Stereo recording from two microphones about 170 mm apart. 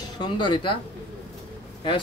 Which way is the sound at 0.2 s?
30° left (ahead or behind).